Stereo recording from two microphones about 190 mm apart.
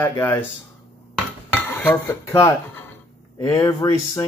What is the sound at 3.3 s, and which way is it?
Speech, 15° left (ahead or behind).